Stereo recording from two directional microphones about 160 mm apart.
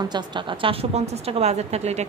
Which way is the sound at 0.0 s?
30° right (ahead or behind).